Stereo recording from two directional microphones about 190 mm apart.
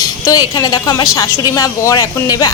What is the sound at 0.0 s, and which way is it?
A woman's voice, 20° left (ahead or behind).